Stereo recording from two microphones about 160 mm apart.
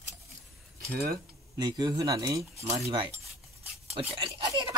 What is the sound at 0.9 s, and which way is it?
Speech, 70° right (ahead or behind).